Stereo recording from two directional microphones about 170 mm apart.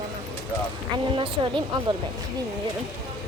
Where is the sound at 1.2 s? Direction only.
30° right (ahead or behind).